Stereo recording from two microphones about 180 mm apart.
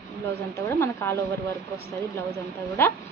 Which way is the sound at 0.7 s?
15° left (ahead or behind).